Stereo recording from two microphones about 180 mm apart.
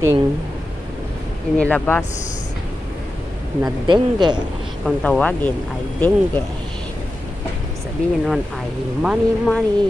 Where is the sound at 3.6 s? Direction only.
25° right (ahead or behind).